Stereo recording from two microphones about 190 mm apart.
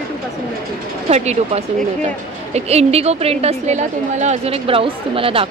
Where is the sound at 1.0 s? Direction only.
35° right (ahead or behind).